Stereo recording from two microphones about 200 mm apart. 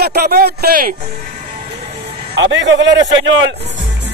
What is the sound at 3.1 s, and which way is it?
Speech, 70° right (ahead or behind).